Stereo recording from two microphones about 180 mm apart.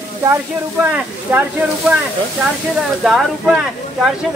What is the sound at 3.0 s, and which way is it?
Speech, 5° right (ahead or behind).